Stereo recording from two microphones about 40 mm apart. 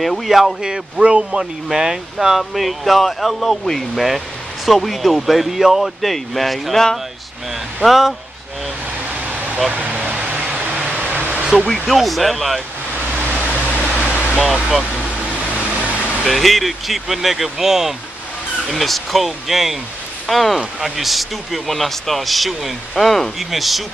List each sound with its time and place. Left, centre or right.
0.0 s speech: centre
0.7 s speech: centre
7.8 s speech: centre
9.8 s a sound: right
11.1 s a sound: right
11.6 s speech: centre
11.9 s speech: centre
13.7 s a sound: left
14.4 s speech: centre
15.1 s vehicle: right
16.3 s speech: centre
18.7 s speech: centre